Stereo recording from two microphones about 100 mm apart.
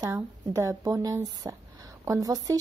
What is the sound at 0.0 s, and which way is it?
A woman's voice, 30° right (ahead or behind).